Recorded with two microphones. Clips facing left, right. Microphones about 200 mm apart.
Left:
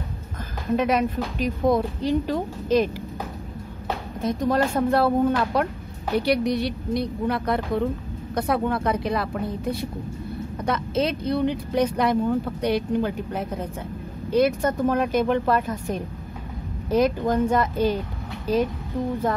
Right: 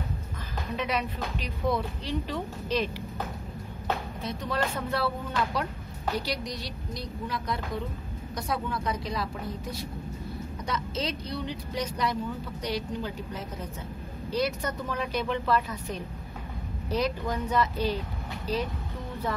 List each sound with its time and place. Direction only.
0.7 s speech: 50° left (ahead or behind)
4.2 s speech: 45° left (ahead or behind)